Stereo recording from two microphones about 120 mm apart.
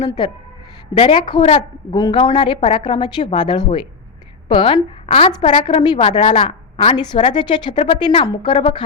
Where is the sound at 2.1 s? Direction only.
45° left (ahead or behind).